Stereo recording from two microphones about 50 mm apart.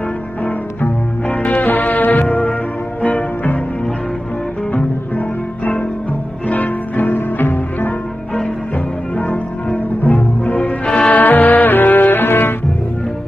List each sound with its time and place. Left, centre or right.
1.3 s music: left
6.5 s music: left
9.1 s music: left
11.1 s music: left